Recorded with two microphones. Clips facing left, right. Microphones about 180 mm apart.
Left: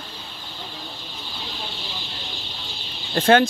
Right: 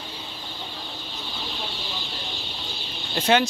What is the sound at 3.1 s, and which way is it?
Speech, 50° left (ahead or behind).